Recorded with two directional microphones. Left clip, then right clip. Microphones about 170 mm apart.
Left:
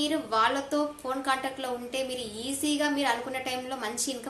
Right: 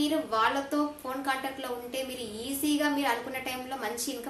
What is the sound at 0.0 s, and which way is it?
A woman's voice, 30° left (ahead or behind).